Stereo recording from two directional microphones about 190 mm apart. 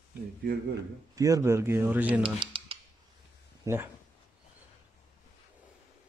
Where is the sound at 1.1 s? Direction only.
15° right (ahead or behind).